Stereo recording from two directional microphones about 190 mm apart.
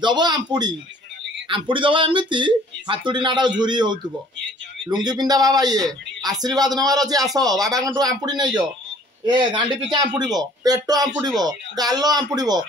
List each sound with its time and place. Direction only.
0.0 s speech: 25° right (ahead or behind)